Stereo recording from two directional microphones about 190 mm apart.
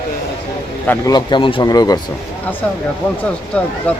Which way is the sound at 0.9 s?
20° left (ahead or behind).